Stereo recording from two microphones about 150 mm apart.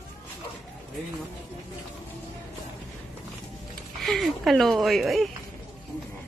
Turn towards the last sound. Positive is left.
turn(degrees=0)  # may be behind; listen again after turning